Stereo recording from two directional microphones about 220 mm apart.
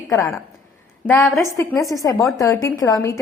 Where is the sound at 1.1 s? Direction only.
10° left (ahead or behind).